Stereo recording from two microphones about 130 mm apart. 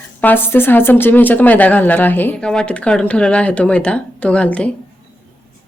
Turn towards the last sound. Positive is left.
turn(degrees=10)  # may be behind; listen again after turning